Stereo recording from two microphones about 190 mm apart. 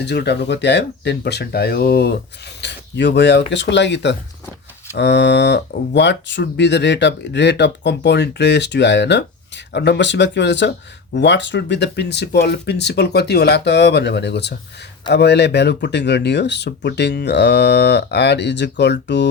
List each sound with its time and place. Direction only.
0.0 s speech: 60° left (ahead or behind)